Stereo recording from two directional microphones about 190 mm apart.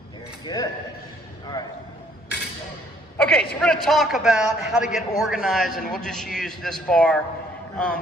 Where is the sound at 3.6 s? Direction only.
Centre (ahead or behind).